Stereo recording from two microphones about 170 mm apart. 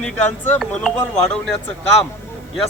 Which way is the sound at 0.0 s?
10° left (ahead or behind).